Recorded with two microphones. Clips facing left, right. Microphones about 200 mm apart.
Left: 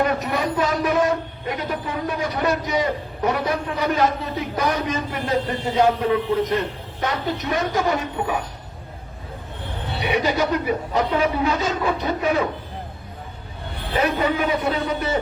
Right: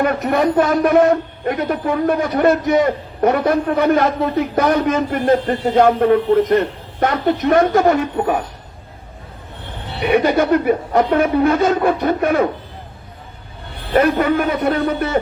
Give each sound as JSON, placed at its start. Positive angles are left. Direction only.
{"t": 0.0, "sound": "a man's voice", "side_deg": -55}
{"t": 10.0, "sound": "a man's voice", "side_deg": -55}
{"t": 13.9, "sound": "a man's voice", "side_deg": -55}